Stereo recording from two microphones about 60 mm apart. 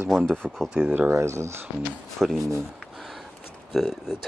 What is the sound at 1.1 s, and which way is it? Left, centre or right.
Speech, right.